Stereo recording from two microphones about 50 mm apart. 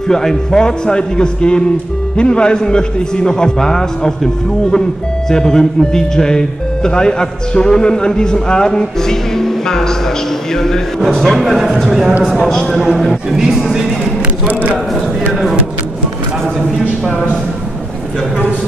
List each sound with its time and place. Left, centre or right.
0.1 s a man's voice: centre
14.5 s a man's voice: right